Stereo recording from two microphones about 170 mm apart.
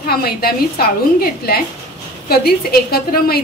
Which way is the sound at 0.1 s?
65° left (ahead or behind).